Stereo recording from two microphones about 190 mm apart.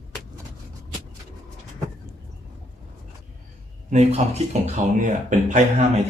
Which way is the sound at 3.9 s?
35° right (ahead or behind).